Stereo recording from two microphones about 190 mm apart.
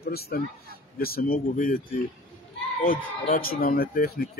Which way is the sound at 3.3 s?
50° left (ahead or behind).